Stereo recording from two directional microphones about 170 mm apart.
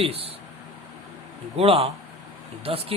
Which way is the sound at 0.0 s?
35° right (ahead or behind).